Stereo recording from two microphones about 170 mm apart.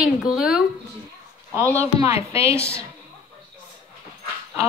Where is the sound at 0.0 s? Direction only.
5° right (ahead or behind).